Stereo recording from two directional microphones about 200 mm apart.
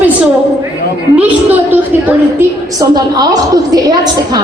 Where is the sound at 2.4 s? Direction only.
20° right (ahead or behind).